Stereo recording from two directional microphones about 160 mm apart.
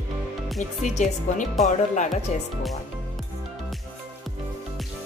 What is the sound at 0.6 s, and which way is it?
Speech, 50° left (ahead or behind).